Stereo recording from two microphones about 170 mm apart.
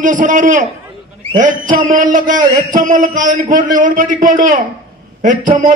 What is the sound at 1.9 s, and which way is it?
A man's voice, 50° right (ahead or behind).